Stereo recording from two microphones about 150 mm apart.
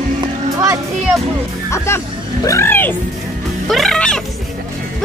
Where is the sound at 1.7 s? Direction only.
20° left (ahead or behind).